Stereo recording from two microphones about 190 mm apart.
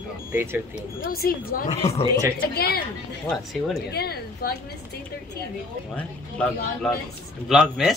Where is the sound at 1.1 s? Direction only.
50° left (ahead or behind).